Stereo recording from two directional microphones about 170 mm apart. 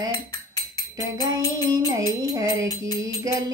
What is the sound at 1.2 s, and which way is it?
Music, 25° right (ahead or behind).